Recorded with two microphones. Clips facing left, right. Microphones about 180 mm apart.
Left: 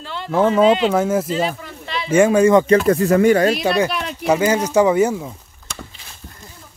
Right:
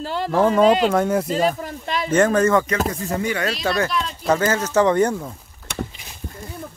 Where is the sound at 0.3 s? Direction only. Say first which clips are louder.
Left 2 dB; centre (ahead or behind).